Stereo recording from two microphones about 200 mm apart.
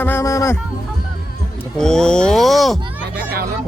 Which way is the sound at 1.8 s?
5° left (ahead or behind).